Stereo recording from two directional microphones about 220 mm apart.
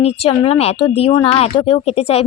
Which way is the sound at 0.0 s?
30° left (ahead or behind).